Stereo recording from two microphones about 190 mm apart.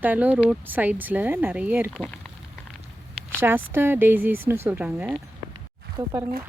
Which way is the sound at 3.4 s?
10° right (ahead or behind).